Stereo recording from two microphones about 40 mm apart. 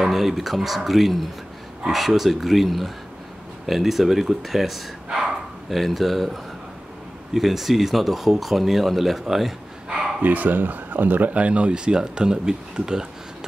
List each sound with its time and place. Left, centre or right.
0.0 s speech: centre
10.2 s speech: right; by 13.0 s centre